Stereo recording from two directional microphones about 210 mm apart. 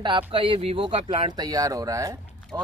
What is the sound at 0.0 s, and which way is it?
Speech, 25° right (ahead or behind).